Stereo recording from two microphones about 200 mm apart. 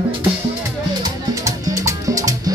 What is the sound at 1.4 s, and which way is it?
Music, 15° right (ahead or behind).